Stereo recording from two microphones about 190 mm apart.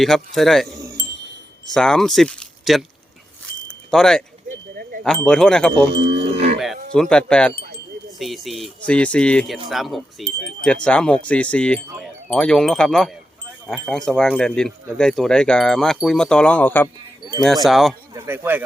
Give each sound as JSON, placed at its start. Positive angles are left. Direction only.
{"t": 0.0, "sound": "speech", "side_deg": 0}
{"t": 0.8, "sound": "chime", "side_deg": -15}
{"t": 1.7, "sound": "speech", "side_deg": 5}
{"t": 3.9, "sound": "a sound", "side_deg": 5}
{"t": 5.0, "sound": "speech", "side_deg": 5}
{"t": 5.9, "sound": "wind chime", "side_deg": -65}
{"t": 6.3, "sound": "cattle", "side_deg": -60}
{"t": 6.9, "sound": "speech", "side_deg": 5}
{"t": 18.1, "sound": "speech", "side_deg": -10}